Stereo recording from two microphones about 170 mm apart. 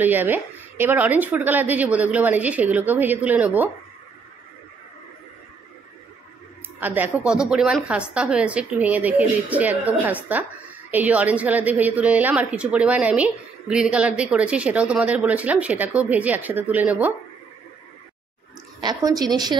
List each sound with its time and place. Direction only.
0.0 s a woman's voice: 10° right (ahead or behind)
6.8 s a woman's voice: 10° right (ahead or behind)
18.8 s a woman's voice: 25° right (ahead or behind)